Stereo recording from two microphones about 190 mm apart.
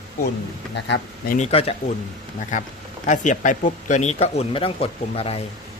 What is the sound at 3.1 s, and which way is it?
Speech, 40° left (ahead or behind).